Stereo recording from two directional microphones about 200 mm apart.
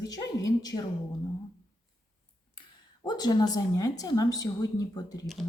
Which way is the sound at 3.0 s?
20° left (ahead or behind).